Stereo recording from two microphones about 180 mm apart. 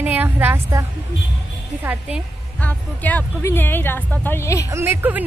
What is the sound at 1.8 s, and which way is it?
Speech, 10° right (ahead or behind).